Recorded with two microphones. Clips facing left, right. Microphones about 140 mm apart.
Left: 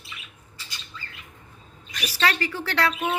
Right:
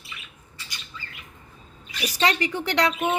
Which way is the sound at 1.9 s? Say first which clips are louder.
Right 3 dB; 30° right (ahead or behind).